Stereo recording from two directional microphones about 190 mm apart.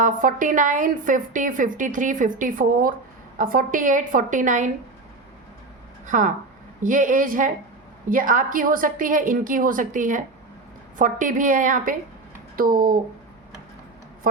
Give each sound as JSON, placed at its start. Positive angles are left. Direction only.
{"t": 0.0, "sound": "a woman's voice", "side_deg": -45}
{"t": 6.1, "sound": "a woman's voice", "side_deg": -40}